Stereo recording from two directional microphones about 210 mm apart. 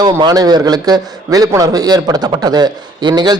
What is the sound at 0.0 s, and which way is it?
A man's voice, 20° right (ahead or behind).